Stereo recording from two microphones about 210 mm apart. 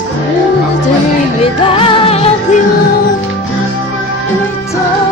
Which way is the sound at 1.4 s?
25° left (ahead or behind).